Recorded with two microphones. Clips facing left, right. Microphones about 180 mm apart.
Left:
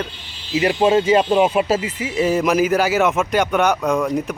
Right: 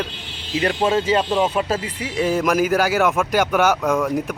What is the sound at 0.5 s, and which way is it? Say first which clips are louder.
Speech: left 4 dB; 5° left (ahead or behind).